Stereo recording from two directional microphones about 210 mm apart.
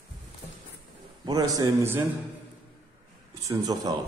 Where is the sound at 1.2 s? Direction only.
15° right (ahead or behind).